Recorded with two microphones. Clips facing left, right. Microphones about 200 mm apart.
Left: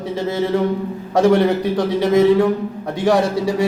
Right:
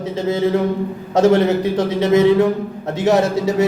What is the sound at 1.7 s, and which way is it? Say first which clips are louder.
A man's voice: even; 20° right (ahead or behind).